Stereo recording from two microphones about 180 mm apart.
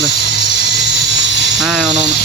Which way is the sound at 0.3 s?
70° left (ahead or behind).